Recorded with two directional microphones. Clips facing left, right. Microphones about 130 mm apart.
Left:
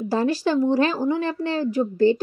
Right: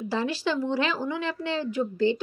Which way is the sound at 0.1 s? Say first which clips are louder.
Left 6 dB; 40° left (ahead or behind).